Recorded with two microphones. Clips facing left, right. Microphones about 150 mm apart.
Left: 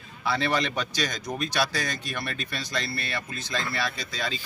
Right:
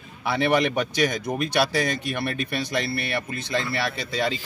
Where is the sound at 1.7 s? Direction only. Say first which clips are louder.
Right 6 dB; 25° right (ahead or behind).